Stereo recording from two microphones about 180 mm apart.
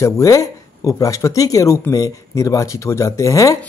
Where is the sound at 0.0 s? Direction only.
15° left (ahead or behind).